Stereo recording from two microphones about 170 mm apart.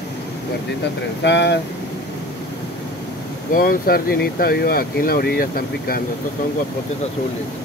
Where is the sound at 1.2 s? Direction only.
90° left.